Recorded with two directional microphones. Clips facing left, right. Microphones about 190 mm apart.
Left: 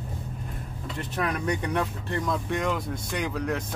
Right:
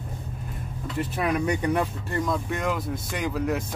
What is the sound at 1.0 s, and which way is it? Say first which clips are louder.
Speech: right 4 dB; 10° right (ahead or behind).